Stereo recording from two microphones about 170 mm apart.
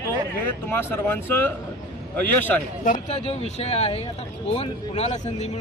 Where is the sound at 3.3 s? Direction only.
35° left (ahead or behind).